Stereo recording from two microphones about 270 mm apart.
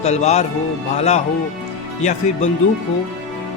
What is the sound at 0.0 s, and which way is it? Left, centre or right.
Speech, left.